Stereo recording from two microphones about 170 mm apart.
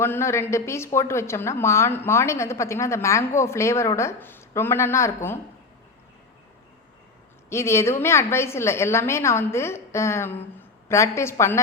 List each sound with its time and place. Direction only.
0.0 s a woman's voice: 15° left (ahead or behind)
7.5 s a woman's voice: 15° left (ahead or behind)